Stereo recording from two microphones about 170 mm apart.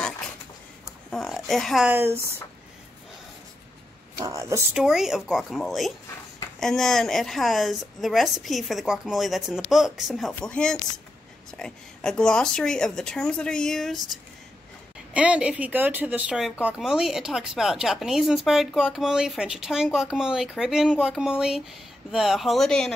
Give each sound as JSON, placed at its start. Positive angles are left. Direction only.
{"t": 1.1, "sound": "speech", "side_deg": 0}
{"t": 1.9, "sound": "speech", "side_deg": -15}
{"t": 4.2, "sound": "speech", "side_deg": -20}
{"t": 4.7, "sound": "speech", "side_deg": -5}
{"t": 15.1, "sound": "speech", "side_deg": -5}